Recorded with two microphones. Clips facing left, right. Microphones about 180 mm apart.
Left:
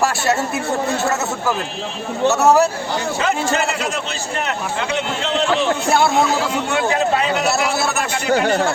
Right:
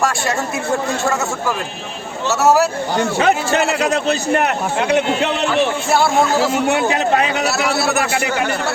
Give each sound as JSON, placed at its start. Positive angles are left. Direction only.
{"t": 2.3, "sound": "speech", "side_deg": 0}
{"t": 3.0, "sound": "a man's voice", "side_deg": -65}
{"t": 6.7, "sound": "a man's voice", "side_deg": -65}